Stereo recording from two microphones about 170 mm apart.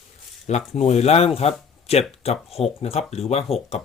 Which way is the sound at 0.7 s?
40° left (ahead or behind).